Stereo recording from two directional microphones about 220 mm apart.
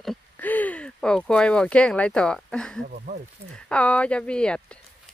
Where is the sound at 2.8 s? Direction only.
35° right (ahead or behind).